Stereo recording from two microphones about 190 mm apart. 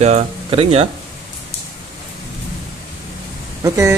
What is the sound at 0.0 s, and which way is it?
Speech, 30° right (ahead or behind).